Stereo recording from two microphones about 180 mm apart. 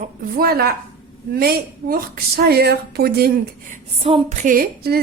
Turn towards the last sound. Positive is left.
turn(degrees=-55)  # may be behind; listen again after turning